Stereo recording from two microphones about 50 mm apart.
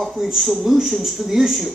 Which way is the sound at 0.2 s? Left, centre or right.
Centre.